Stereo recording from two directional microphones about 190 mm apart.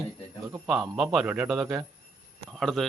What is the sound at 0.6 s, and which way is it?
A man's voice, 5° right (ahead or behind).